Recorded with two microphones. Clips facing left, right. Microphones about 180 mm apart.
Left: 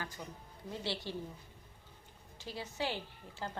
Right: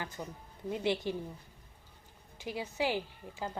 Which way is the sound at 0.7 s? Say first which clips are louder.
Right 8 dB; 15° right (ahead or behind).